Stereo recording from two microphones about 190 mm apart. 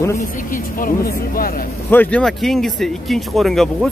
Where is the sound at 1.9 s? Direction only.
10° left (ahead or behind).